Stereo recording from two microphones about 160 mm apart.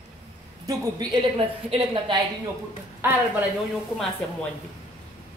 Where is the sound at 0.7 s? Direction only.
25° right (ahead or behind).